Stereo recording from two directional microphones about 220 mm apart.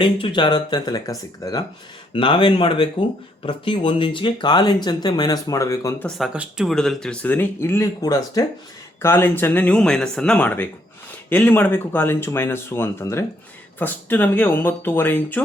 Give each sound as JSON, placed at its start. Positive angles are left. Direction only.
{"t": 0.0, "sound": "speech", "side_deg": 20}
{"t": 6.1, "sound": "speech", "side_deg": 0}